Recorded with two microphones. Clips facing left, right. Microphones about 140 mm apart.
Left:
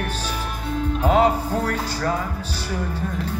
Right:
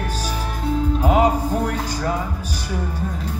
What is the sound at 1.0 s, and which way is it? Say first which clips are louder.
Music: left 1 dB; 15° right (ahead or behind).